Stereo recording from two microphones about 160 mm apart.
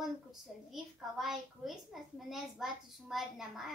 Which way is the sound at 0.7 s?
Centre (ahead or behind).